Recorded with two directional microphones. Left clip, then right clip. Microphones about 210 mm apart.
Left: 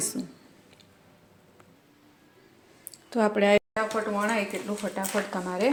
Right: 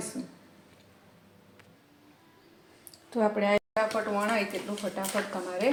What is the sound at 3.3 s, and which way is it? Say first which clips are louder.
Speech: left 7 dB; 55° left (ahead or behind).